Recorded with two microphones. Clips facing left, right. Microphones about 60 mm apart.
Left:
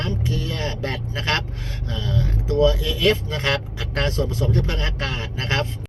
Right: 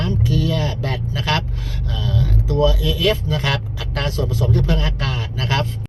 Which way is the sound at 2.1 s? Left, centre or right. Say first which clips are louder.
Right 2 dB; left.